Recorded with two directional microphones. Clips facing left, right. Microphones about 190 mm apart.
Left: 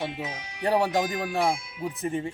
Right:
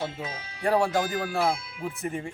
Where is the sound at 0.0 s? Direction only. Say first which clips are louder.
Left 1 dB; 20° left (ahead or behind).